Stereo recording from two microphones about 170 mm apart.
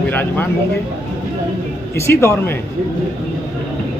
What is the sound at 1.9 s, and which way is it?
Speech, 15° left (ahead or behind).